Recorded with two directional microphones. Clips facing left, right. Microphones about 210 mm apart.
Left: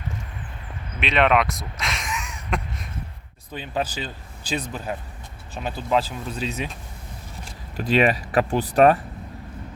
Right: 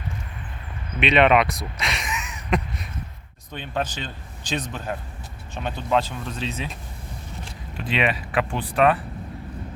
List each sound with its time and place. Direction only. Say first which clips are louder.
0.9 s speech: right 2 dB; centre (ahead or behind)
7.8 s speech: left 5 dB; 40° left (ahead or behind)